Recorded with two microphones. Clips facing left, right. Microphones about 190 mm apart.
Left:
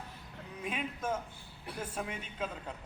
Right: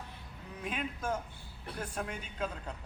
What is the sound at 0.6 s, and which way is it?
A man's voice, 5° left (ahead or behind).